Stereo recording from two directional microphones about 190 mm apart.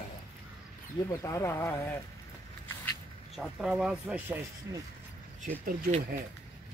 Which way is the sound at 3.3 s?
Centre (ahead or behind).